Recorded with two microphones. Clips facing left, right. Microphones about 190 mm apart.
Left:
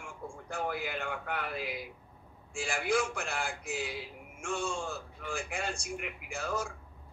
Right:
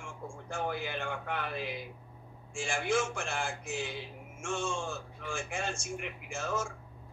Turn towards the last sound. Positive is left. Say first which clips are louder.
# even
turn(degrees=-25)  # may be behind; listen again after turning